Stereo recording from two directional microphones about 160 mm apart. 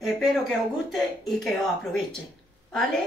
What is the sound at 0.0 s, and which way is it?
Speech, centre (ahead or behind).